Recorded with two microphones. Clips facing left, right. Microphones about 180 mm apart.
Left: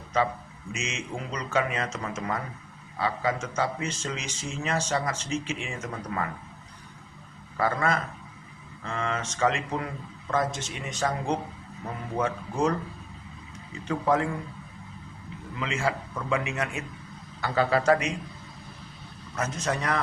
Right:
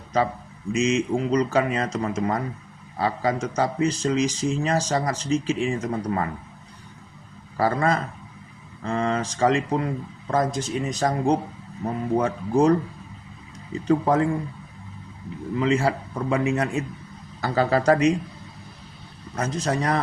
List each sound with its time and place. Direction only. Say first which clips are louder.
0.1 s speech: right 3 dB; 35° right (ahead or behind)
7.5 s speech: right 4 dB; 35° right (ahead or behind)
13.8 s speech: right 5 dB; 35° right (ahead or behind)
15.5 s speech: right 7 dB; 35° right (ahead or behind)
19.4 s speech: right 4 dB; 35° right (ahead or behind)